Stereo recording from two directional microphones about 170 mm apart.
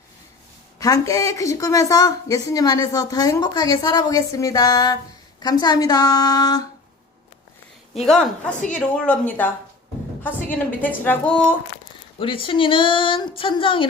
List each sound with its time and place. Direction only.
0.8 s a woman's voice: 20° left (ahead or behind)
7.9 s a woman's voice: centre (ahead or behind)
10.8 s speech: 10° left (ahead or behind)
12.2 s speech: 30° left (ahead or behind)